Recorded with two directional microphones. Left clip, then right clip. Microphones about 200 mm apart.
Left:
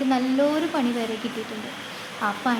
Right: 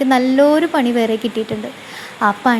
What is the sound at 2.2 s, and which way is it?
Speech, 35° right (ahead or behind).